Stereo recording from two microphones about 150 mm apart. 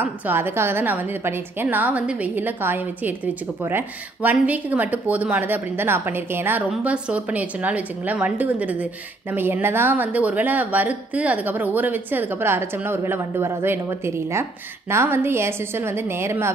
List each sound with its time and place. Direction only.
0.0 s a woman's voice: 15° right (ahead or behind)